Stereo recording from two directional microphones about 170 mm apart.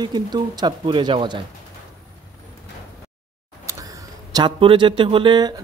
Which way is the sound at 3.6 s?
20° right (ahead or behind).